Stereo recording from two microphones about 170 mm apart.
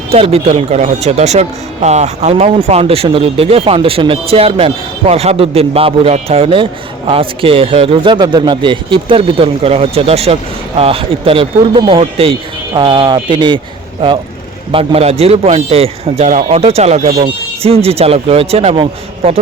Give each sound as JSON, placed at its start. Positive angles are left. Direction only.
{"t": 0.1, "sound": "speech", "side_deg": -35}
{"t": 14.7, "sound": "speech", "side_deg": -35}